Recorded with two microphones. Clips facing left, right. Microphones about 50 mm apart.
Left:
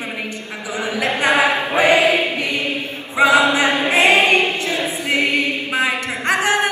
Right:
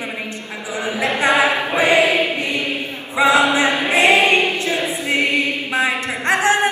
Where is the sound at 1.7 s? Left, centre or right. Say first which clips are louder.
Left 1 dB; left.